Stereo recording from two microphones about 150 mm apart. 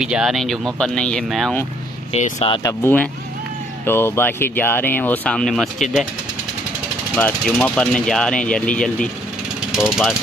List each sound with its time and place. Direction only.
0.0 s speech: 5° right (ahead or behind)
2.1 s speech: 50° left (ahead or behind)
2.6 s speech: 15° left (ahead or behind)
7.2 s speech: 10° left (ahead or behind)